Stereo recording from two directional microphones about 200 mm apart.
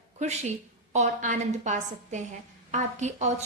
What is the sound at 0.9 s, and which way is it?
A woman's voice, 40° right (ahead or behind).